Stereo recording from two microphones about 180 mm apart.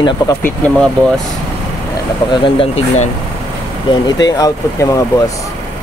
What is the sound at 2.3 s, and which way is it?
Speech, 30° left (ahead or behind).